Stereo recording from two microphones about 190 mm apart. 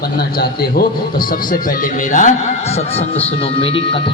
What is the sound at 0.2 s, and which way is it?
A man's voice, 55° left (ahead or behind).